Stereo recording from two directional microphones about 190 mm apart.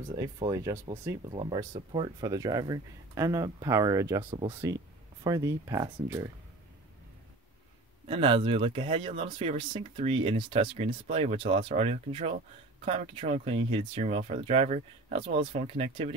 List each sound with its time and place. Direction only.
0.4 s speech: 20° right (ahead or behind)
4.3 s speech: 30° right (ahead or behind)
5.2 s speech: 15° right (ahead or behind)
8.1 s speech: 25° right (ahead or behind)